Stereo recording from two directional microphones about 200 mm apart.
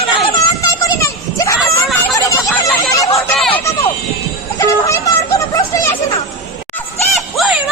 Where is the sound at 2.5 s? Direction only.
Centre (ahead or behind).